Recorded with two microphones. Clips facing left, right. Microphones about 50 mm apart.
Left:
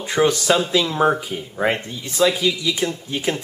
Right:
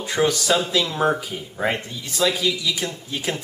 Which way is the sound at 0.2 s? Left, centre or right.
Centre.